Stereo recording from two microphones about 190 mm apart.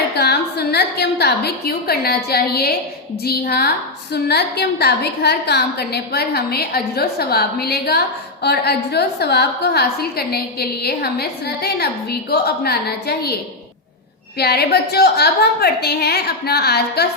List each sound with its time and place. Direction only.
0.2 s a woman's voice: 60° left (ahead or behind)
14.3 s a woman's voice: 55° left (ahead or behind)